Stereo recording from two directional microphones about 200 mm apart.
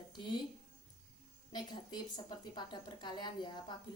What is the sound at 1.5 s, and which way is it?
A woman's voice, 20° left (ahead or behind).